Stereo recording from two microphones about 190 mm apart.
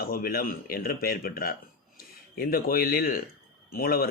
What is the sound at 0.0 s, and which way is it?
Speech, 50° left (ahead or behind).